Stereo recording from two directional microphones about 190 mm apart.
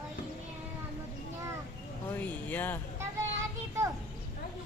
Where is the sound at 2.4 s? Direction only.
10° left (ahead or behind).